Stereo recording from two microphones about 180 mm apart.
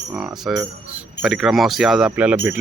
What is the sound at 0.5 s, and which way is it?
Speech, 10° right (ahead or behind).